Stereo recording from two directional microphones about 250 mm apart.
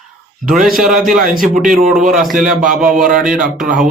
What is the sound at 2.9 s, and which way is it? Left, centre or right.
Speech, right.